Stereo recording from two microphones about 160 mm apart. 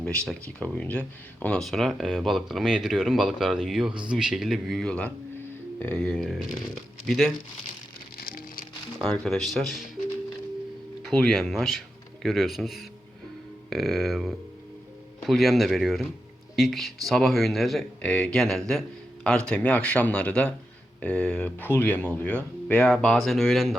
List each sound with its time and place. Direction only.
0.0 s speech: 5° left (ahead or behind)
8.2 s music: 60° left (ahead or behind)
9.0 s speech: 5° left (ahead or behind)
11.0 s speech: centre (ahead or behind)